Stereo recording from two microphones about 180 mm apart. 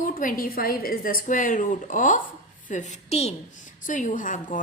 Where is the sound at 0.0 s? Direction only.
50° left (ahead or behind).